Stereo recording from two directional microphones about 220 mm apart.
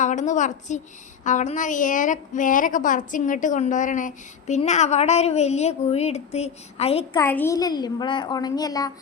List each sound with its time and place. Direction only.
0.0 s a woman's voice: 35° left (ahead or behind)
7.2 s a woman's voice: 10° left (ahead or behind)